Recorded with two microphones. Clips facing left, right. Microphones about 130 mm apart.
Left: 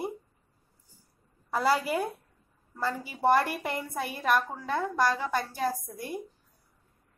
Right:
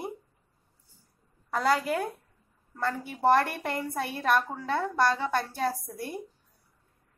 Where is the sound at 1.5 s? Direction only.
5° left (ahead or behind).